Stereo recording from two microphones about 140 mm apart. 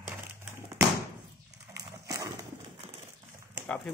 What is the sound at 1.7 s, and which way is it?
Dog, 25° right (ahead or behind).